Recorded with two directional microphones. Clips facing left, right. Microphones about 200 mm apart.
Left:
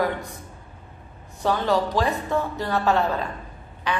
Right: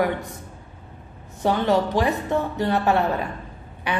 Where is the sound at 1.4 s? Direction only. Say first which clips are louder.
Right 2 dB; 20° right (ahead or behind).